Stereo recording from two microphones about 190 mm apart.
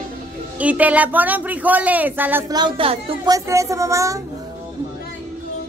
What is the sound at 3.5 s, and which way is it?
Speech, 15° right (ahead or behind).